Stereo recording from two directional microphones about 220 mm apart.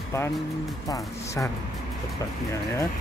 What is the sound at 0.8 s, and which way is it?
Speech, 15° left (ahead or behind).